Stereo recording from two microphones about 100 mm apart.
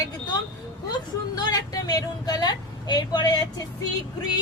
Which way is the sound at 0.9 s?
40° left (ahead or behind).